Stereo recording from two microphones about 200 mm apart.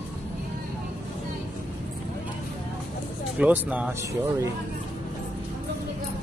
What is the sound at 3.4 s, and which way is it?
Speech, 5° right (ahead or behind).